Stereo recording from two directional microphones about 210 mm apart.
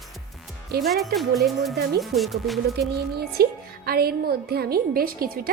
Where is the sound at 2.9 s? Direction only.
50° right (ahead or behind).